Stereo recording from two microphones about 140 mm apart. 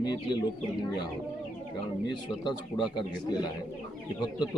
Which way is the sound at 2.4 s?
30° left (ahead or behind).